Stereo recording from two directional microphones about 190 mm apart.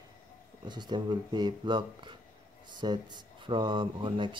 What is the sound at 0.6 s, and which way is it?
Speech, 25° right (ahead or behind).